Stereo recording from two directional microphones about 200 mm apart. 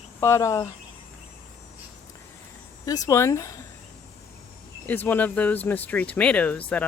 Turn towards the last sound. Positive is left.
turn(degrees=5)  # may be behind; listen again after turning